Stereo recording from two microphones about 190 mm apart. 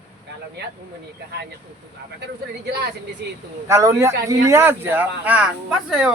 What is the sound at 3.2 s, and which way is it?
Speech, 60° right (ahead or behind).